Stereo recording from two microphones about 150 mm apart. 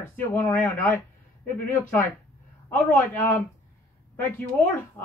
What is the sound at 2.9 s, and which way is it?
Speech, 20° left (ahead or behind).